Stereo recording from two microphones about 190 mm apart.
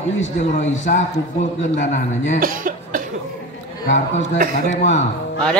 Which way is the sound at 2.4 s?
45° right (ahead or behind).